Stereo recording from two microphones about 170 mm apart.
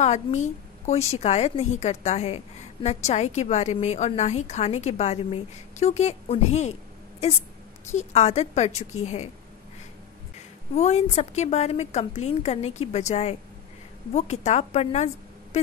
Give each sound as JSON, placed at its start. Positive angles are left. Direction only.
{"t": 0.0, "sound": "a woman's voice", "side_deg": 45}
{"t": 10.7, "sound": "a woman's voice", "side_deg": 40}
{"t": 15.5, "sound": "a sound", "side_deg": 40}